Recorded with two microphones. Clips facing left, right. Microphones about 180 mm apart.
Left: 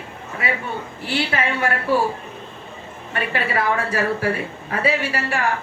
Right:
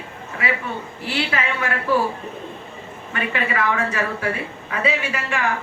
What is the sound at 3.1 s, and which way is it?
A woman's voice, 35° left (ahead or behind).